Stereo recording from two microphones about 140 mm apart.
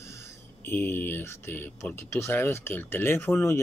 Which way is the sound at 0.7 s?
15° left (ahead or behind).